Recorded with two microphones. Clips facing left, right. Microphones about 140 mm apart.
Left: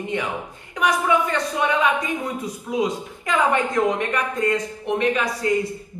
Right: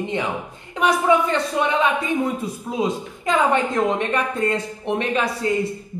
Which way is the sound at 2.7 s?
25° right (ahead or behind).